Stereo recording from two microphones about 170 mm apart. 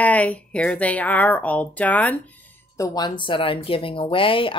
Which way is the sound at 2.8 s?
25° left (ahead or behind).